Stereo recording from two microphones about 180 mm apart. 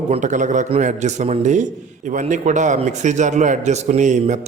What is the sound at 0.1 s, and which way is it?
A man's voice, 45° right (ahead or behind).